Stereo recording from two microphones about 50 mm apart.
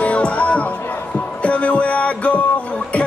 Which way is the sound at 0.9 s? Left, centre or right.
Left.